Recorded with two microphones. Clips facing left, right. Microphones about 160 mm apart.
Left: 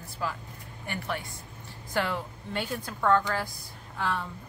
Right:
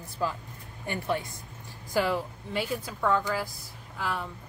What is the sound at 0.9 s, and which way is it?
Speech, 20° right (ahead or behind).